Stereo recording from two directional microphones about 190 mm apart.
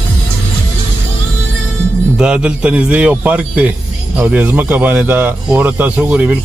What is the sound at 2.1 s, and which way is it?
Speech, 5° right (ahead or behind).